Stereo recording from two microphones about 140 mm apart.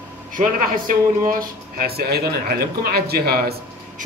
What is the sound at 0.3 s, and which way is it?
Speech, 80° right.